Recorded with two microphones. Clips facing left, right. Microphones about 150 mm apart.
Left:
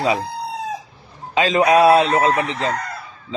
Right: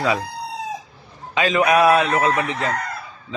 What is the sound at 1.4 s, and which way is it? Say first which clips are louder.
A man's voice: left 2 dB; 30° left (ahead or behind).